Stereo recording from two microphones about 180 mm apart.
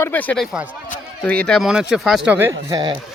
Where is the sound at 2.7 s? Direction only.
20° right (ahead or behind).